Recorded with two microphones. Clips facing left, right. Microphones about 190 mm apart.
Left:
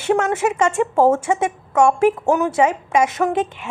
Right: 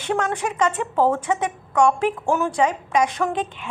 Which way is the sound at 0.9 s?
45° left (ahead or behind).